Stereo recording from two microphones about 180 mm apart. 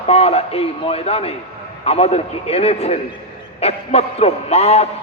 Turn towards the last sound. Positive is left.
turn(degrees=35)  # may be behind; listen again after turning